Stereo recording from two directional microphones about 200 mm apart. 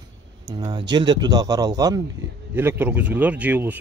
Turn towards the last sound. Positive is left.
turn(degrees=-10)  # may be behind; listen again after turning